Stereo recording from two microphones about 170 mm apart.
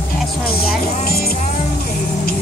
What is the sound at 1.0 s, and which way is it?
Speech, 60° left (ahead or behind).